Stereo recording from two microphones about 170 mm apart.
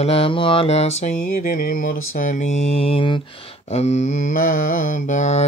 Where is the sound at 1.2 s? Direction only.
55° left (ahead or behind).